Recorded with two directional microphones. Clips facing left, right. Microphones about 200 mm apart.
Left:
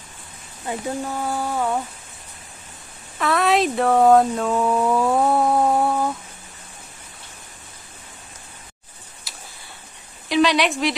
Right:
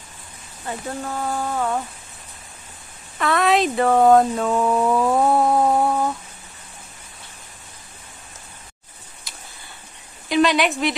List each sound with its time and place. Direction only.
0.7 s speech: 15° left (ahead or behind)
3.2 s speech: centre (ahead or behind)
9.3 s tick-tock: 5° left (ahead or behind)
10.2 s a woman's voice: centre (ahead or behind)